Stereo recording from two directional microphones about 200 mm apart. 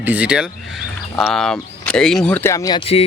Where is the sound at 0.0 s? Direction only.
5° right (ahead or behind).